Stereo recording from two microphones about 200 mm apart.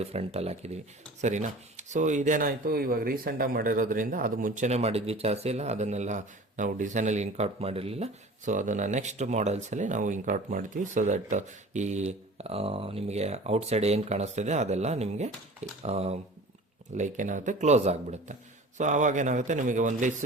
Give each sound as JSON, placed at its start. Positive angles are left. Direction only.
{"t": 0.0, "sound": "speech", "side_deg": -30}